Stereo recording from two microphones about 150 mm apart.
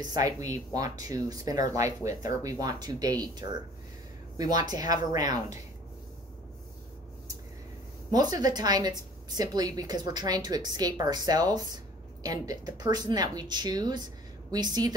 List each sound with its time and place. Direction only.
0.0 s a woman's voice: 25° right (ahead or behind)
8.1 s a woman's voice: 25° right (ahead or behind)